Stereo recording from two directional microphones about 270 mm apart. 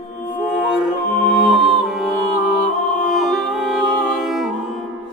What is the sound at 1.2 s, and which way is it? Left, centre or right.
Music, centre.